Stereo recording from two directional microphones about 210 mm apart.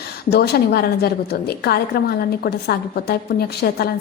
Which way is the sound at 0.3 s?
50° left (ahead or behind).